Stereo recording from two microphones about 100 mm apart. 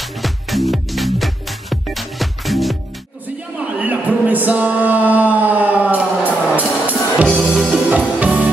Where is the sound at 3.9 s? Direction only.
15° right (ahead or behind).